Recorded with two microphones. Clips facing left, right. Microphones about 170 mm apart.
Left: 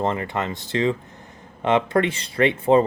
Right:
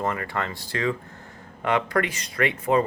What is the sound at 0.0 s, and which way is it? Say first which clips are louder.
Speech: left 3 dB; 25° left (ahead or behind).